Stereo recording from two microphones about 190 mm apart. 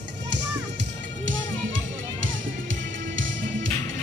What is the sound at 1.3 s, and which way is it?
Music, 90° right.